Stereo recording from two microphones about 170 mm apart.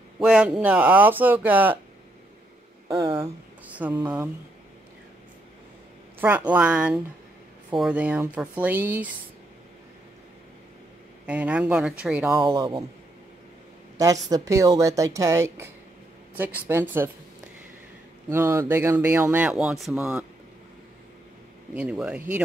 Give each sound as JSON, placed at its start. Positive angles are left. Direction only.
{"t": 0.2, "sound": "speech", "side_deg": -5}
{"t": 3.7, "sound": "speech", "side_deg": -10}
{"t": 6.1, "sound": "speech", "side_deg": -10}
{"t": 11.2, "sound": "speech", "side_deg": -10}
{"t": 12.4, "sound": "a woman's voice", "side_deg": -30}
{"t": 13.9, "sound": "a woman's voice", "side_deg": -20}
{"t": 18.3, "sound": "speech", "side_deg": -15}
{"t": 21.7, "sound": "speech", "side_deg": -5}